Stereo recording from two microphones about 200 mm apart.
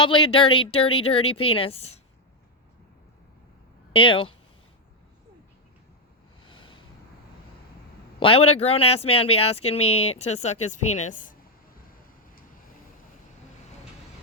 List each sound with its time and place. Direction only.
0.0 s a woman's voice: 25° left (ahead or behind)
3.9 s a woman's voice: 25° left (ahead or behind)
6.4 s a sound: 25° left (ahead or behind)
8.2 s a woman's voice: 30° left (ahead or behind)